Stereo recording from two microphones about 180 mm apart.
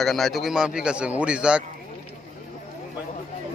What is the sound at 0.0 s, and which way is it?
A man's voice, centre (ahead or behind).